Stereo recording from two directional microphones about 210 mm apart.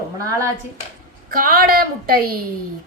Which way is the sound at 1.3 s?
45° right (ahead or behind).